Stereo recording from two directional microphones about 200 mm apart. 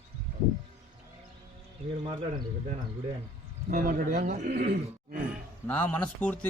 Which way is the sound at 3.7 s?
45° right (ahead or behind).